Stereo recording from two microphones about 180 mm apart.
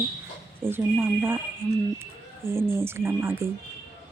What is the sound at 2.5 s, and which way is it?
Speech, 15° right (ahead or behind).